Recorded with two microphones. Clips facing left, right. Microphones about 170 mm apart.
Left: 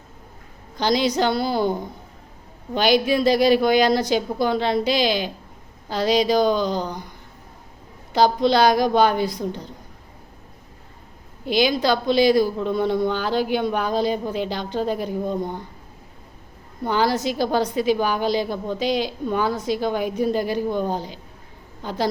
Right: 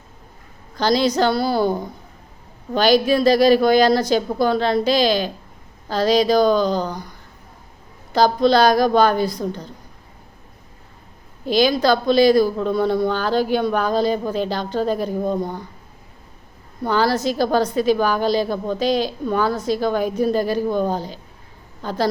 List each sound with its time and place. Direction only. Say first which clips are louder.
0.8 s a woman's voice: right 3 dB; 15° left (ahead or behind)
2.7 s a woman's voice: right 3 dB; 15° left (ahead or behind)
8.1 s a woman's voice: right 2 dB; 15° left (ahead or behind)
11.4 s a woman's voice: right 3 dB; 15° left (ahead or behind)
16.8 s a woman's voice: right 2 dB; 15° left (ahead or behind)